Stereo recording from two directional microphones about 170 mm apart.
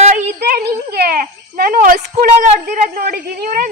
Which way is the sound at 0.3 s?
70° right (ahead or behind).